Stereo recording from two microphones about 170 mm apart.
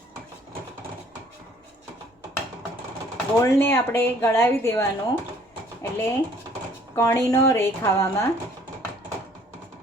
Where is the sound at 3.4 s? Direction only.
15° left (ahead or behind).